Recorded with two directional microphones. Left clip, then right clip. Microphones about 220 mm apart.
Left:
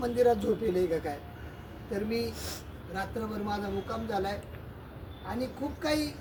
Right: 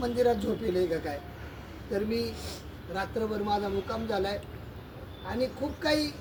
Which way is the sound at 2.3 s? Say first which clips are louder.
Even; 25° left (ahead or behind).